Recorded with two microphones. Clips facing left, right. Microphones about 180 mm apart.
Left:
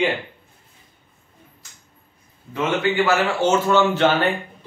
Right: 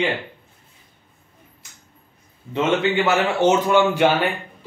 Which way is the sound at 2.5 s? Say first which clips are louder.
Right 2 dB; 25° right (ahead or behind).